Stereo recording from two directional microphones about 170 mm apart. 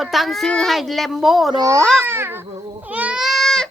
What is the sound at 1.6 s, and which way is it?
Speech, 20° right (ahead or behind).